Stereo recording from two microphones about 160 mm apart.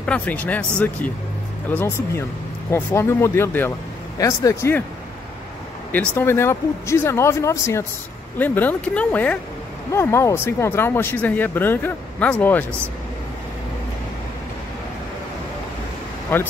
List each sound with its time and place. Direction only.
0.0 s speech: 10° left (ahead or behind)
5.9 s speech: 15° left (ahead or behind)
16.3 s speech: 10° left (ahead or behind)